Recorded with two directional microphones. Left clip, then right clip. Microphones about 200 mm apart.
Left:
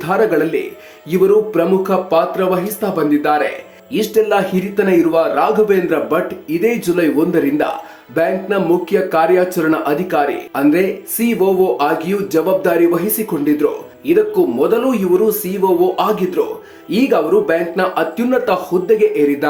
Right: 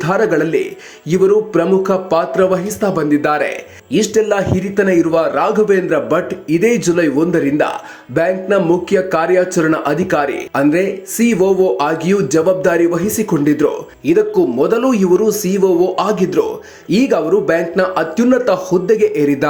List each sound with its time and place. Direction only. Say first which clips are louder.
0.0 s speech: even; 20° right (ahead or behind)